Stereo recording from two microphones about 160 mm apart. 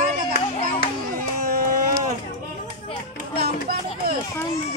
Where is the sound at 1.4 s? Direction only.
65° right (ahead or behind).